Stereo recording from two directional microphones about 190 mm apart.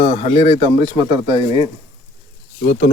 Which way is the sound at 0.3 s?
30° left (ahead or behind).